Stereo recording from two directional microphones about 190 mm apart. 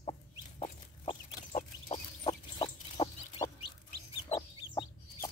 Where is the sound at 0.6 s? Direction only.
35° left (ahead or behind).